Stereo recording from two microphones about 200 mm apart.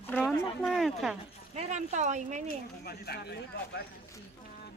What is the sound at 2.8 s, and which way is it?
Speech, 50° left (ahead or behind).